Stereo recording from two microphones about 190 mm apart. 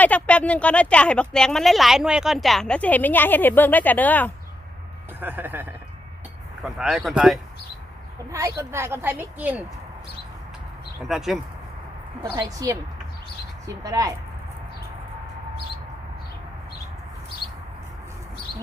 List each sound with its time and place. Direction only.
0.0 s speech: 5° left (ahead or behind)
5.2 s a woman's voice: 10° right (ahead or behind)
8.3 s a woman's voice: 15° right (ahead or behind)
11.1 s speech: 5° right (ahead or behind)
12.2 s a woman's voice: 20° right (ahead or behind)
13.8 s a woman's voice: 20° right (ahead or behind)